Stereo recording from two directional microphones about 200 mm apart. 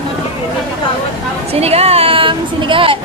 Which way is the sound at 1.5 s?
30° right (ahead or behind).